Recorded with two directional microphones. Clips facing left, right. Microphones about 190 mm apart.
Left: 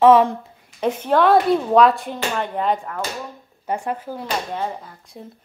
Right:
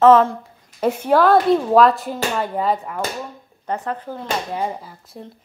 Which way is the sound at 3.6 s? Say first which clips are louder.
Even; 10° left (ahead or behind).